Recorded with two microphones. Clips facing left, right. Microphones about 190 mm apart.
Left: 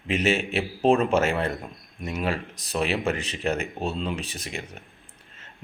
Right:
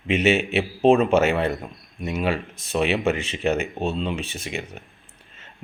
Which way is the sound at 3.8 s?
Centre (ahead or behind).